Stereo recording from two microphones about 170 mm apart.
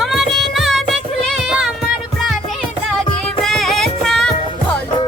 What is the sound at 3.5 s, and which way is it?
Music, centre (ahead or behind).